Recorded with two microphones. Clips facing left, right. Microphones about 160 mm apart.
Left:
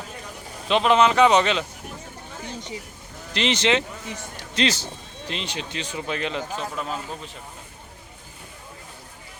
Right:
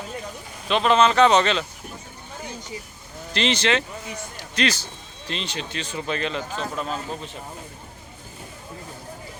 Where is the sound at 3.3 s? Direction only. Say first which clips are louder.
Even; 20° left (ahead or behind).